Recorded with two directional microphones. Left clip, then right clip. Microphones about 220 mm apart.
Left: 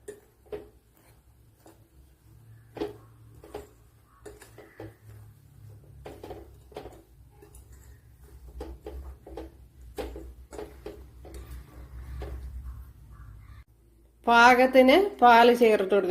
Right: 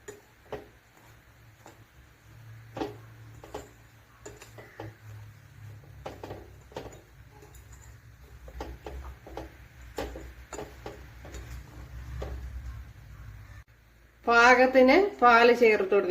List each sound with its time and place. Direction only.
14.3 s speech: 25° left (ahead or behind)